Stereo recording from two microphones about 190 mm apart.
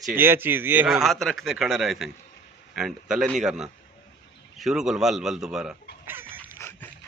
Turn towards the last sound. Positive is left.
turn(degrees=15)  # may be behind; listen again after turning